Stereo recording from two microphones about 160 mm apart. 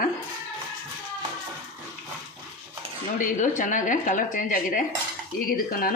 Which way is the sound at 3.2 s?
55° left (ahead or behind).